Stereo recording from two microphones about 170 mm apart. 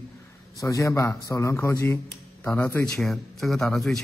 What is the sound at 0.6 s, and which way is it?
A man's voice, 20° left (ahead or behind).